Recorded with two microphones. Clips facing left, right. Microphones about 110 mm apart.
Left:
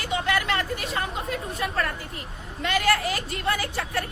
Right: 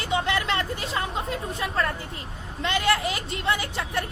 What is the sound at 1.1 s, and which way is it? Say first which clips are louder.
Speech: right 1 dB; 30° right (ahead or behind).